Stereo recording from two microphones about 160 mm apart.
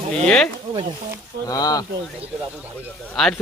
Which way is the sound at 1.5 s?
25° left (ahead or behind).